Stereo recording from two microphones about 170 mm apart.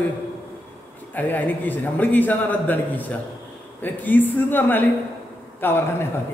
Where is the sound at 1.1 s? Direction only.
10° left (ahead or behind).